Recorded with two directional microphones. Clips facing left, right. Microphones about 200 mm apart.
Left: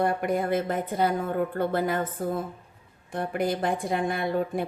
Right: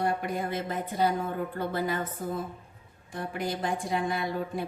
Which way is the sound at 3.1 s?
55° left (ahead or behind).